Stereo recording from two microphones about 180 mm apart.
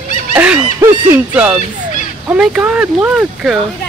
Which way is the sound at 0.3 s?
10° right (ahead or behind).